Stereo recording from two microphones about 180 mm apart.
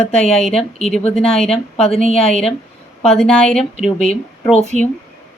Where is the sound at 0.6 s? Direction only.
35° left (ahead or behind).